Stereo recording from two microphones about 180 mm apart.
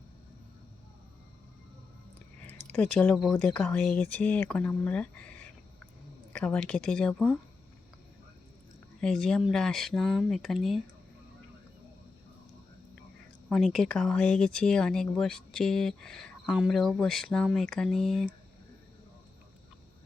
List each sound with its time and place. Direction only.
2.7 s speech: 5° left (ahead or behind)
9.0 s speech: 5° left (ahead or behind)
13.5 s speech: centre (ahead or behind)